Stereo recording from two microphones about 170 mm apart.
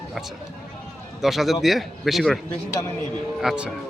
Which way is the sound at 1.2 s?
Centre (ahead or behind).